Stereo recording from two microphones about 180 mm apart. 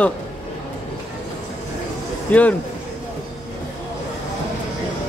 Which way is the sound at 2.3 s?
10° left (ahead or behind).